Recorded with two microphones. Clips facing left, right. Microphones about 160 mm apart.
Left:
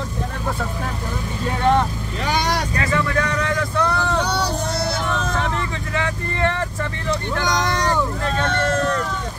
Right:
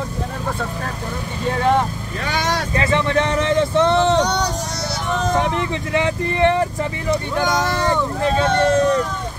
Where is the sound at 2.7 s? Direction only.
25° right (ahead or behind).